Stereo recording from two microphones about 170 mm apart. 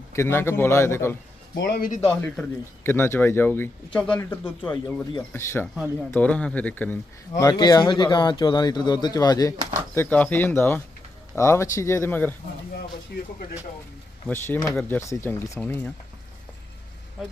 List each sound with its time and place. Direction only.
0.1 s speech: 15° left (ahead or behind)
1.5 s a man's voice: 80° left
2.0 s speech: 5° left (ahead or behind)
7.3 s speech: 25° left (ahead or behind)
14.3 s speech: 10° left (ahead or behind)